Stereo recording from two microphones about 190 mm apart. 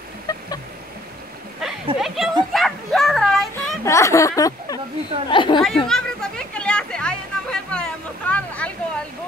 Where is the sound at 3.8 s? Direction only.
15° left (ahead or behind).